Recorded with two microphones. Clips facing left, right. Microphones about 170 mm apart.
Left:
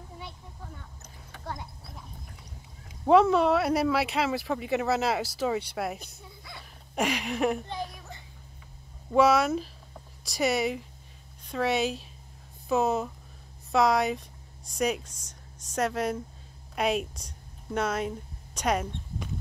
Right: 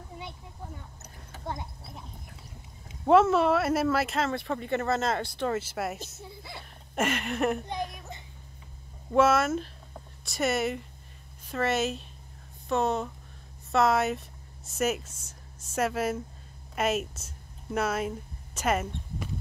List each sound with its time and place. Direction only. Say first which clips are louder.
1.4 s clip-clop: right 2 dB; 20° right (ahead or behind)
3.1 s speech: even; centre (ahead or behind)
6.2 s a sound: right 4 dB; 25° right (ahead or behind)
6.6 s speech: even; centre (ahead or behind)
7.8 s a sound: right 2 dB; centre (ahead or behind)
9.1 s speech: left 1 dB; centre (ahead or behind)